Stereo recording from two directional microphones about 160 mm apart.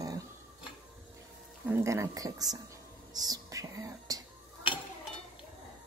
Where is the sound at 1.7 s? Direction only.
15° right (ahead or behind).